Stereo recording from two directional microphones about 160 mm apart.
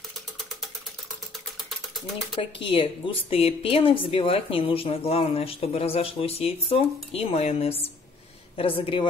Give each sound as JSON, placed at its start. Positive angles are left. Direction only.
{"t": 2.3, "sound": "a woman's voice", "side_deg": 35}